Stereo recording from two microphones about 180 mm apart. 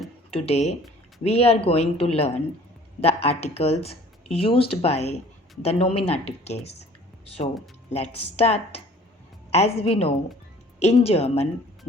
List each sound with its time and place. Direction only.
0.3 s speech: 35° left (ahead or behind)